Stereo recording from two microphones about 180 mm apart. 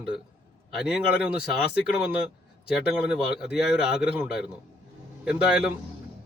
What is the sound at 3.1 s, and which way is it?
A man's voice, 5° right (ahead or behind).